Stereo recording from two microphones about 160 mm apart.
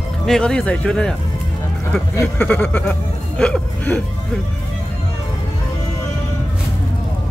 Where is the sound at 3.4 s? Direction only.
5° left (ahead or behind).